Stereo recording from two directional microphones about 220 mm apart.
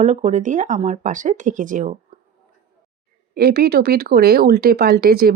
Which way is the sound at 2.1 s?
35° right (ahead or behind).